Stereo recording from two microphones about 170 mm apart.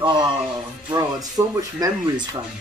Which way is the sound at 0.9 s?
20° right (ahead or behind).